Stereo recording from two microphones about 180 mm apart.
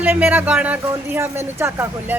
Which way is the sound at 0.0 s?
10° right (ahead or behind).